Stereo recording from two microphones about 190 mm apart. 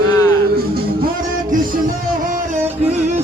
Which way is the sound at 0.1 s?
20° left (ahead or behind).